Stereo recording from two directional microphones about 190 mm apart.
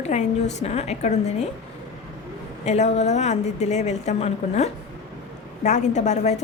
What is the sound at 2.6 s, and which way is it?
A woman's voice, 35° left (ahead or behind).